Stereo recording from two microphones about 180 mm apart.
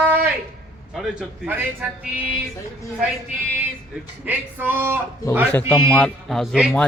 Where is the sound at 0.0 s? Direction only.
10° right (ahead or behind).